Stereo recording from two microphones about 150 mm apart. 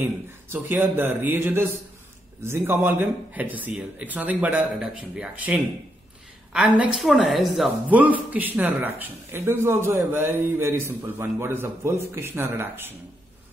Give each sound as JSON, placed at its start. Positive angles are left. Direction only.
{"t": 0.0, "sound": "speech", "side_deg": -15}